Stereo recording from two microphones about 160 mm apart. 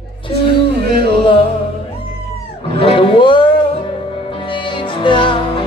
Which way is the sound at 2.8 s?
35° left (ahead or behind).